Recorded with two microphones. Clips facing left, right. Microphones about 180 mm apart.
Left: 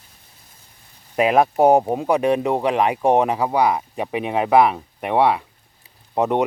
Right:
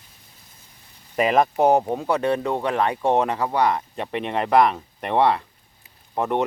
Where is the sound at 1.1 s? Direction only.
5° left (ahead or behind).